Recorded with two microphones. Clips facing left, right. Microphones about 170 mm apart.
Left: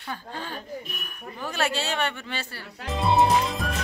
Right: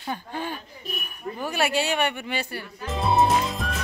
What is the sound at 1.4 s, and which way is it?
Speech, 10° right (ahead or behind).